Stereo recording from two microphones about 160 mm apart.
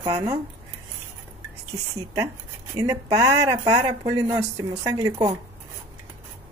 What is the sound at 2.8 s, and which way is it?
Speech, 20° right (ahead or behind).